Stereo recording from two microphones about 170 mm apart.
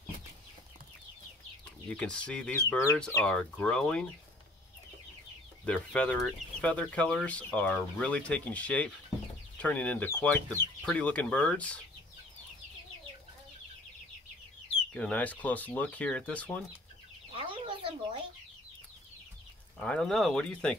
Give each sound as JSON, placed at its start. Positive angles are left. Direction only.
{"t": 1.9, "sound": "speech", "side_deg": 5}
{"t": 5.7, "sound": "speech", "side_deg": 5}
{"t": 15.0, "sound": "speech", "side_deg": 10}
{"t": 17.3, "sound": "chicken", "side_deg": -30}
{"t": 19.8, "sound": "speech", "side_deg": 5}